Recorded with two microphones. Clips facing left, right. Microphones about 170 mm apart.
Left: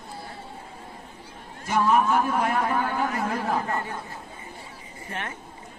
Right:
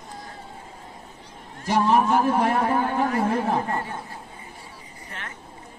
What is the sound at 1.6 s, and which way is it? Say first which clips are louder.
Speech: right 2 dB; 35° right (ahead or behind).